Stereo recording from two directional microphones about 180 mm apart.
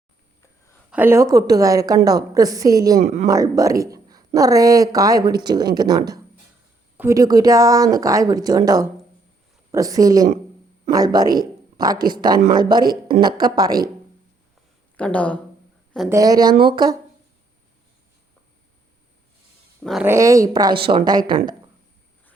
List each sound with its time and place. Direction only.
0.9 s a woman's voice: 10° right (ahead or behind)
3.0 s speech: 40° right (ahead or behind)
3.2 s a woman's voice: 20° right (ahead or behind)
14.9 s speech: 5° left (ahead or behind)
16.0 s a woman's voice: 20° right (ahead or behind)
19.8 s speech: centre (ahead or behind)
20.1 s a woman's voice: 15° right (ahead or behind)